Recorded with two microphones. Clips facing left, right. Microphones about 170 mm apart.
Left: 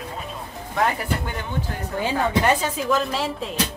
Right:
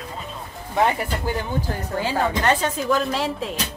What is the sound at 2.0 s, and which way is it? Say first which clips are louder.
Speech: left 2 dB; 10° left (ahead or behind).